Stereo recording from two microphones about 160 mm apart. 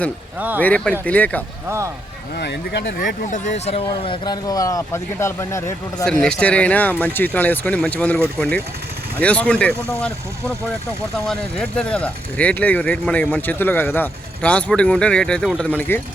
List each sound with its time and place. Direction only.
0.3 s speech: 10° right (ahead or behind)
0.6 s speech: 10° left (ahead or behind)
1.6 s speech: 15° right (ahead or behind)
2.4 s speech: 90° left
3.2 s speech: 50° left (ahead or behind); by 6.1 s 15° left (ahead or behind)
6.1 s speech: 5° left (ahead or behind)
11.3 s speech: 5° left (ahead or behind)